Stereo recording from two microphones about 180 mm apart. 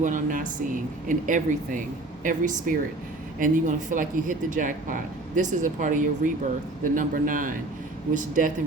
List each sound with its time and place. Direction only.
0.0 s speech: 45° right (ahead or behind)